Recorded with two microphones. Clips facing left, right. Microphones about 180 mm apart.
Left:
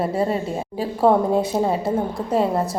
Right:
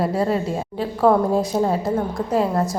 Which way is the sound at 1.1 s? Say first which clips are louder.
Even; 25° left (ahead or behind).